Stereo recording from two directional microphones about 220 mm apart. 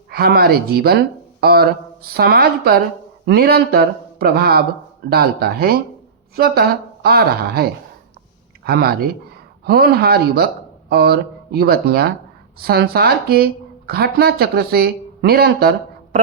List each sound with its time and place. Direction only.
0.1 s speech: 45° right (ahead or behind)
8.6 s speech: 45° right (ahead or behind)